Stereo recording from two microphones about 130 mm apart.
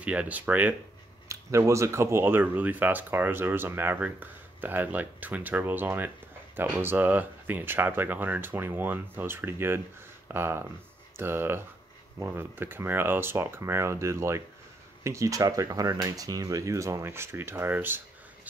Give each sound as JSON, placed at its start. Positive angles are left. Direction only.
{"t": 0.0, "sound": "speech", "side_deg": -10}